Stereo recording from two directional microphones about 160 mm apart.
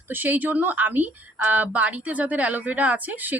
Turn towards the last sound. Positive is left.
turn(degrees=-10)  # may be behind; listen again after turning